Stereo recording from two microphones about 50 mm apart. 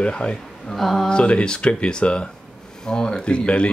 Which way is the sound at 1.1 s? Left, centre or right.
Left.